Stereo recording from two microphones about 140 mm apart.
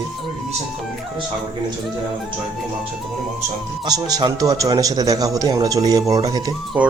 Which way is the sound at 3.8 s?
30° right (ahead or behind).